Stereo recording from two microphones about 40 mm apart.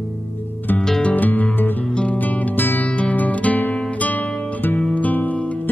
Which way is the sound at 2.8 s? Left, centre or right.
Left.